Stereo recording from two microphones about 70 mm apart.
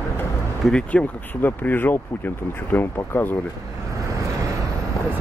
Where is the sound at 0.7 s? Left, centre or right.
Left.